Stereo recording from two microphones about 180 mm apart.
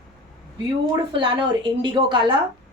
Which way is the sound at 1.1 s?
30° right (ahead or behind).